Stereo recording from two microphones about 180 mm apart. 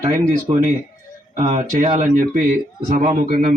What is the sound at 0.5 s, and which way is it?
Speech, 35° right (ahead or behind).